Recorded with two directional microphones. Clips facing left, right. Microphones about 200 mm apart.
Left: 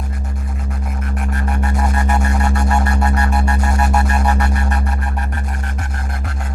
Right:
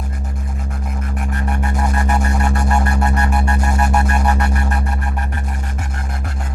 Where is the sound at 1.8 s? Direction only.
Centre (ahead or behind).